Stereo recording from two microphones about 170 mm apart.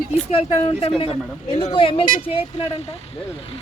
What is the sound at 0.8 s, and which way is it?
Speech, 35° left (ahead or behind).